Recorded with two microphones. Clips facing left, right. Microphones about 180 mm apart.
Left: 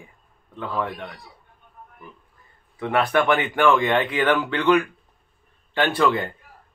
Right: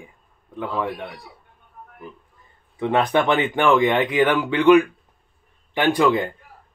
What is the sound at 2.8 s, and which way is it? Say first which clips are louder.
A man's voice: right 2 dB; 20° right (ahead or behind).